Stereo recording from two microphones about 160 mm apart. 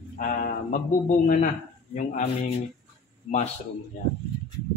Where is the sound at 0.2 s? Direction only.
55° left (ahead or behind).